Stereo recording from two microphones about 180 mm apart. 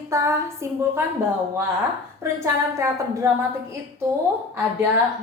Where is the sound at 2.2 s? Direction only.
15° right (ahead or behind).